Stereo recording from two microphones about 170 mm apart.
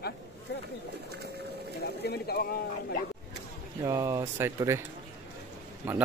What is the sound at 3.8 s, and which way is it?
Speech, 20° right (ahead or behind).